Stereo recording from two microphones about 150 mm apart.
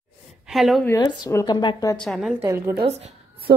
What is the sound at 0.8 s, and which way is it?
Speech, 25° left (ahead or behind).